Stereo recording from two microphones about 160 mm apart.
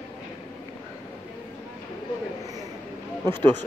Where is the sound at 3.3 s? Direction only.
15° left (ahead or behind).